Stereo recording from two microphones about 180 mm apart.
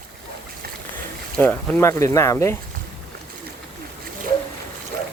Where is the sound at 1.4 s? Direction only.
10° left (ahead or behind).